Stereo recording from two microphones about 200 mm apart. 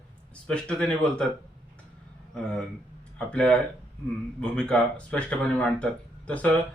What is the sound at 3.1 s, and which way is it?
Speech, 5° left (ahead or behind).